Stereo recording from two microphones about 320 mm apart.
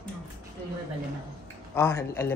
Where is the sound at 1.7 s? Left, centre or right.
Centre.